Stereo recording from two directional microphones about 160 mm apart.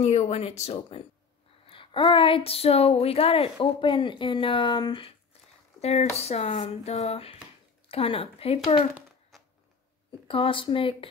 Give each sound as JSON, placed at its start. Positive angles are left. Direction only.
{"t": 0.0, "sound": "speech", "side_deg": 40}
{"t": 5.8, "sound": "speech", "side_deg": 40}
{"t": 10.2, "sound": "speech", "side_deg": 35}